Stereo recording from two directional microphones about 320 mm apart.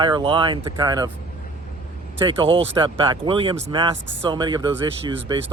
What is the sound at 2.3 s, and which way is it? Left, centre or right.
Speech, centre.